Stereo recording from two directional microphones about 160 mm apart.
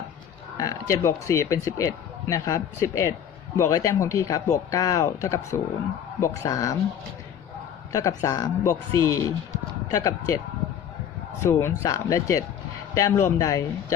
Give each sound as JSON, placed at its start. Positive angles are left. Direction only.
{"t": 0.5, "sound": "speech", "side_deg": 20}
{"t": 7.9, "sound": "speech", "side_deg": 20}
{"t": 11.4, "sound": "speech", "side_deg": 15}